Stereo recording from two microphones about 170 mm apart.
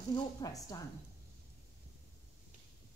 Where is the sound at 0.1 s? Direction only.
20° left (ahead or behind).